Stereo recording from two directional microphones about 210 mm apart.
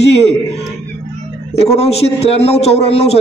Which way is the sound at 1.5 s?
30° left (ahead or behind).